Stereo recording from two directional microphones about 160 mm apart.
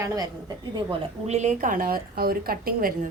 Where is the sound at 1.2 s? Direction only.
45° right (ahead or behind).